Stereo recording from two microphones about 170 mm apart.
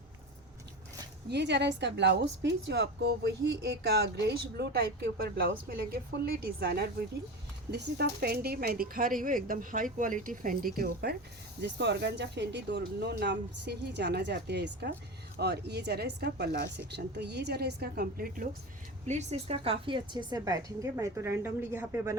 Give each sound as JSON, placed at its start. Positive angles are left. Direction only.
{"t": 1.3, "sound": "a woman's voice", "side_deg": -80}
{"t": 11.6, "sound": "a woman's voice", "side_deg": -85}
{"t": 19.0, "sound": "a woman's voice", "side_deg": -40}